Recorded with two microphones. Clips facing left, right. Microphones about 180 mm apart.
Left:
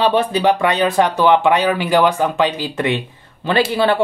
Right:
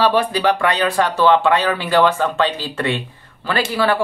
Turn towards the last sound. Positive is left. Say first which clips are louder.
# left 3 dB
turn(degrees=25)  # may be behind; listen again after turning